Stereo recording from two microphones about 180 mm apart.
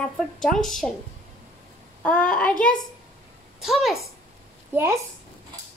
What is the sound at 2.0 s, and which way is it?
A woman's voice, 5° left (ahead or behind).